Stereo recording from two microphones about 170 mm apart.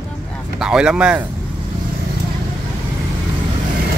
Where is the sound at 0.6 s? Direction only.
5° right (ahead or behind).